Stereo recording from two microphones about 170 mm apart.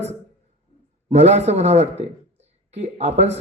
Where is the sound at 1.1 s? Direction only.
40° right (ahead or behind).